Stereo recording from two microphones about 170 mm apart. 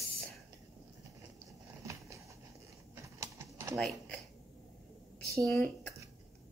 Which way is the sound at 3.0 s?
15° right (ahead or behind).